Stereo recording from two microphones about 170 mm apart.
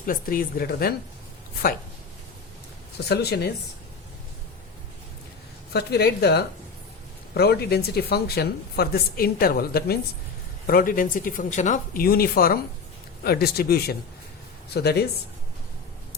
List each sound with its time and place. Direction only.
0.0 s speech: 55° left (ahead or behind)
3.1 s a woman's voice: 75° left (ahead or behind)
5.7 s a woman's voice: 75° left (ahead or behind)